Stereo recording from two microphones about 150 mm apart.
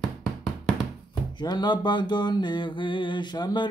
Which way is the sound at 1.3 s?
30° left (ahead or behind).